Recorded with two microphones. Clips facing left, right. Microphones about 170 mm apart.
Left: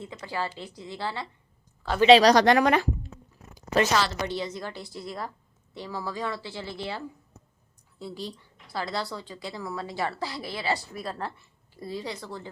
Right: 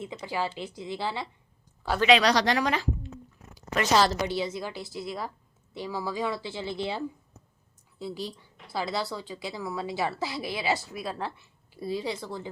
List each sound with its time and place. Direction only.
0.0 s a woman's voice: 15° right (ahead or behind)
2.0 s speech: 35° left (ahead or behind)
2.3 s a woman's voice: 55° left (ahead or behind)
3.9 s a woman's voice: 35° right (ahead or behind)
4.3 s a woman's voice: 5° right (ahead or behind)
7.9 s a woman's voice: 5° right (ahead or behind)
11.0 s a woman's voice: centre (ahead or behind)